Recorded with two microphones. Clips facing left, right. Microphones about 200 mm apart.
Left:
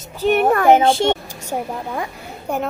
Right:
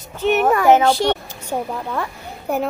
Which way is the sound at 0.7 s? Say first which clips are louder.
Left 1 dB; 25° left (ahead or behind).